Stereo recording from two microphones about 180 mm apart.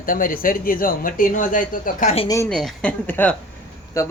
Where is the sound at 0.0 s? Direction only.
50° left (ahead or behind).